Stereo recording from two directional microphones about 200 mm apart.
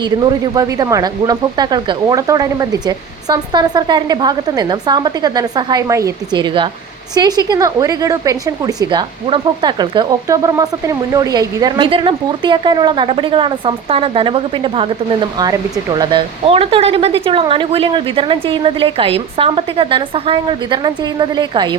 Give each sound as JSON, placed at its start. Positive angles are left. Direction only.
{"t": 0.0, "sound": "a woman's voice", "side_deg": -20}